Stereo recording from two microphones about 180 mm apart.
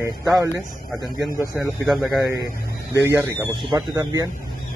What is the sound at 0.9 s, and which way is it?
Speech, centre (ahead or behind).